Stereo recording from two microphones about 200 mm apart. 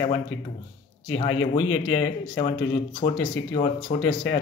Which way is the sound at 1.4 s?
25° left (ahead or behind).